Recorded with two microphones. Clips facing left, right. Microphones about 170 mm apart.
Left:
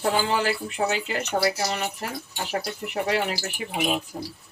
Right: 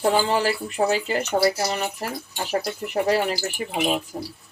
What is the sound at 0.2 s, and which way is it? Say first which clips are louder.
Speech: right 2 dB; 40° right (ahead or behind).